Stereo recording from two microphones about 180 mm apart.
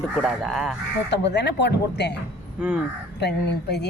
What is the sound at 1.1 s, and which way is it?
A woman's voice, 75° left (ahead or behind).